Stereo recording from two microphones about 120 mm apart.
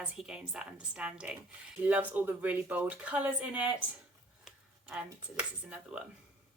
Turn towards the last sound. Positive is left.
turn(degrees=-5)  # may be behind; listen again after turning